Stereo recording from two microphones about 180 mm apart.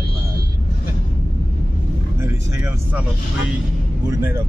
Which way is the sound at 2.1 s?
15° right (ahead or behind).